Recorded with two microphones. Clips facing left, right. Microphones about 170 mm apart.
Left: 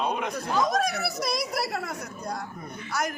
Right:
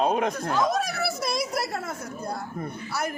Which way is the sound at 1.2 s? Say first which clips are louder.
Left 1 dB; 5° right (ahead or behind).